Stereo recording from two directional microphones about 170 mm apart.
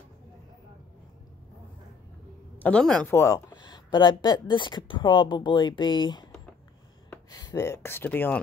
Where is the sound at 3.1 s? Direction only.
15° left (ahead or behind).